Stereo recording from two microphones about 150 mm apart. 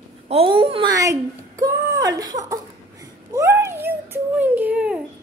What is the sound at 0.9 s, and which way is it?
Speech, 20° right (ahead or behind).